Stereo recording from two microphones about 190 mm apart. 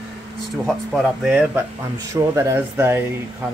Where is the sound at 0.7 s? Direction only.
Centre (ahead or behind).